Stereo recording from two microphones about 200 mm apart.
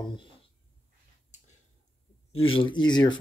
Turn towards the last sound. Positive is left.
turn(degrees=20)  # may be behind; listen again after turning